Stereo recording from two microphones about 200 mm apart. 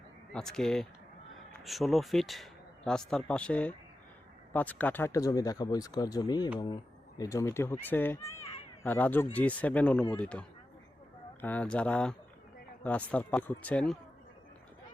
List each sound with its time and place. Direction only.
0.3 s speech: centre (ahead or behind)